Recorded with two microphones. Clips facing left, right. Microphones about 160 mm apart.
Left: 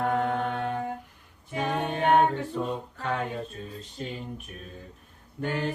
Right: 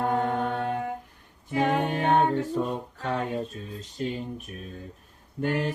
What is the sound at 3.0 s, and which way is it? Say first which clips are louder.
Female singing: right 3 dB; 40° right (ahead or behind).